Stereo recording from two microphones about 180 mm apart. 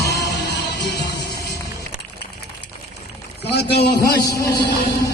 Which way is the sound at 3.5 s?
65° left (ahead or behind).